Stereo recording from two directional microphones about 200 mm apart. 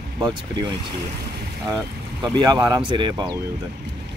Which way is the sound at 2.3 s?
20° right (ahead or behind).